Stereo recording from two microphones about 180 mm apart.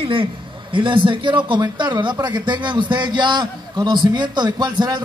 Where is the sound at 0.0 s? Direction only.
30° right (ahead or behind).